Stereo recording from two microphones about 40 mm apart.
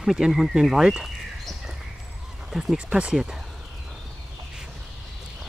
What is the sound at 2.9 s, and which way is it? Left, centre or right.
Speech, right.